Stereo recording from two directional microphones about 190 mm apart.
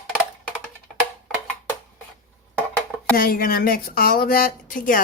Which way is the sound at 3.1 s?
50° left (ahead or behind).